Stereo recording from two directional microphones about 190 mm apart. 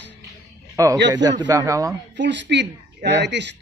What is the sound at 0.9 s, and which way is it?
Speech, 65° right (ahead or behind).